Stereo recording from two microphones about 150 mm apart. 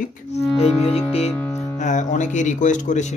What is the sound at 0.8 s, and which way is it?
Speech, 40° left (ahead or behind).